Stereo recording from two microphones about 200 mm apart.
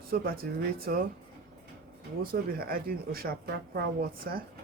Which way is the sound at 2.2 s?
45° right (ahead or behind).